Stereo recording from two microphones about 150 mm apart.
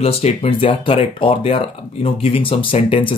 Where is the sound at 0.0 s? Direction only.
45° left (ahead or behind).